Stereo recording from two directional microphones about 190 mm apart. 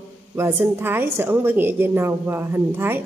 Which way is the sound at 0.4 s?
10° right (ahead or behind).